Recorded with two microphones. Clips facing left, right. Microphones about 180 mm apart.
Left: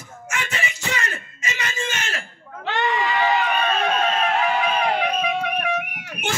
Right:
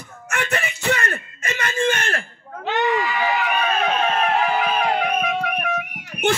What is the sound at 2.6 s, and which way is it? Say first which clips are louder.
Screaming: right 2 dB; 15° right (ahead or behind).